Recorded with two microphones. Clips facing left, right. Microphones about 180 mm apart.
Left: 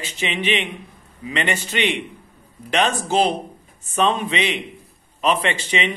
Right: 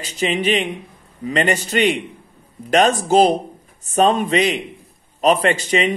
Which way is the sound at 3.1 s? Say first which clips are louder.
Right 5 dB; 40° right (ahead or behind).